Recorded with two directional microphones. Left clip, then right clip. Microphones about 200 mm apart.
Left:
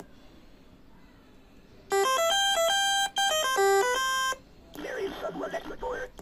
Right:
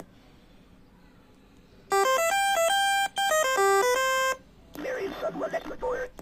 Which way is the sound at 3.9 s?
5° right (ahead or behind).